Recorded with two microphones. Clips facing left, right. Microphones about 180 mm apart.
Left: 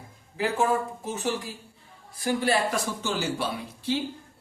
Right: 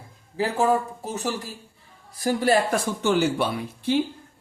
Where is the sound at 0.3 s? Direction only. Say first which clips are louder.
Right 3 dB; 35° right (ahead or behind).